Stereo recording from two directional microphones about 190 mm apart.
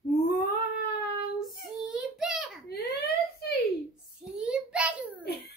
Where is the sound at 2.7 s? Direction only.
55° left (ahead or behind).